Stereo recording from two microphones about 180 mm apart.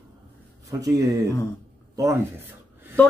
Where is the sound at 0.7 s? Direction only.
20° right (ahead or behind).